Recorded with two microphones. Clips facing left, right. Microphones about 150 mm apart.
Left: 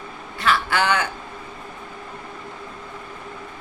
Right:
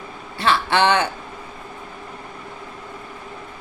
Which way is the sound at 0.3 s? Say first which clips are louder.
Right 3 dB; 30° right (ahead or behind).